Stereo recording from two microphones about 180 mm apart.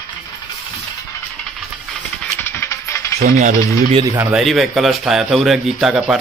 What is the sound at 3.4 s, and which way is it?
Speech, 40° right (ahead or behind).